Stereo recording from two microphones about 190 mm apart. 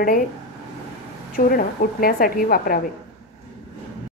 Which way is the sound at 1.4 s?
50° left (ahead or behind).